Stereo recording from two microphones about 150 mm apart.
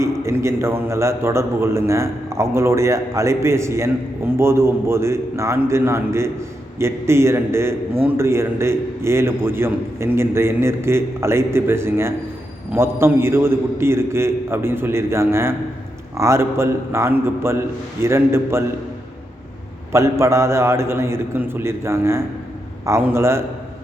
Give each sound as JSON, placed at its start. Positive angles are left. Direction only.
{"t": 0.0, "sound": "a man's voice", "side_deg": -20}
{"t": 19.9, "sound": "a man's voice", "side_deg": -20}